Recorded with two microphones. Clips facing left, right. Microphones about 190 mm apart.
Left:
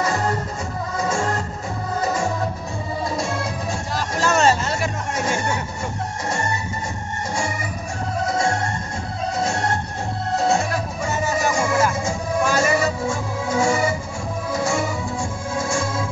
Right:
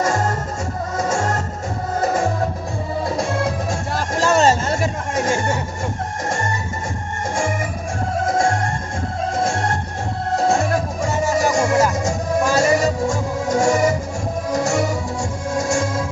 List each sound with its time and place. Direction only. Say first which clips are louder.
0.9 s music: right 2 dB; 45° right (ahead or behind)
4.3 s music: right 2 dB; 35° right (ahead or behind)
4.6 s music: right 3 dB; 45° right (ahead or behind)
8.3 s music: right 3 dB; 50° right (ahead or behind)
11.4 s music: right 2 dB; 40° right (ahead or behind)
15.5 s organ: right 4 dB; 45° right (ahead or behind)